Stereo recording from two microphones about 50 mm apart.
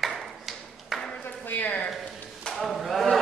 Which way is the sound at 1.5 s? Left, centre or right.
Left.